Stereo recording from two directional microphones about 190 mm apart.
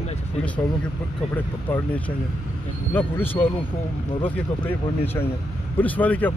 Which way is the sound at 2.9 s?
10° left (ahead or behind).